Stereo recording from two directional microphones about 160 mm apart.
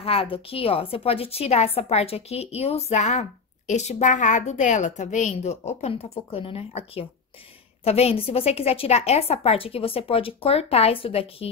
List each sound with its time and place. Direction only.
0.0 s a woman's voice: 35° left (ahead or behind)
7.8 s a woman's voice: 40° left (ahead or behind)